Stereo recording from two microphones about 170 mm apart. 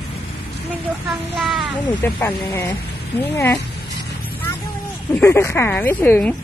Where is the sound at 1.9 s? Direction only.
10° left (ahead or behind).